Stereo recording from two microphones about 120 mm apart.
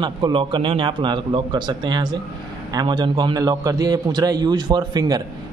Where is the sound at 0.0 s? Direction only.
40° right (ahead or behind).